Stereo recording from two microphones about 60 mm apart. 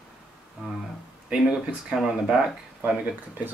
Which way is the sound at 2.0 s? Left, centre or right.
Centre.